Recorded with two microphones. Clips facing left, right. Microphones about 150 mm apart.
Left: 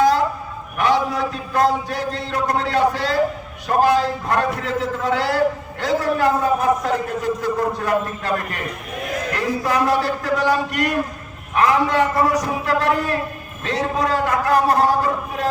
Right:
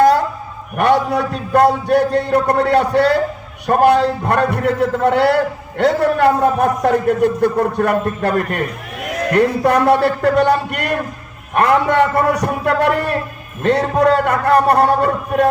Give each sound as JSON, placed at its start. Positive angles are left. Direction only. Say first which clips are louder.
{"t": 0.8, "sound": "a man's voice", "louder": "right 4 dB", "side_deg": -60}